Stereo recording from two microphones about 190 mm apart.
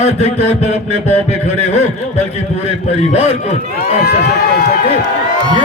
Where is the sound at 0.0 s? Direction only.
35° left (ahead or behind).